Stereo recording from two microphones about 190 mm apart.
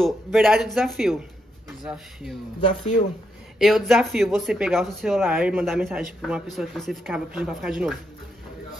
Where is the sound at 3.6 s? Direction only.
Centre (ahead or behind).